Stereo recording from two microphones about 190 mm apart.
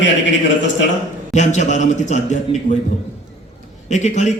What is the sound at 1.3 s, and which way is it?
A man's voice, 40° left (ahead or behind).